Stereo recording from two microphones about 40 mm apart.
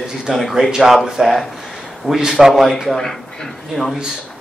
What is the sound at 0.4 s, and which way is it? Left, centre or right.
Speech, centre.